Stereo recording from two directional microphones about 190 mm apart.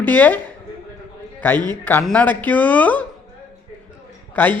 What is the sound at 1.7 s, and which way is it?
Speech, 10° left (ahead or behind).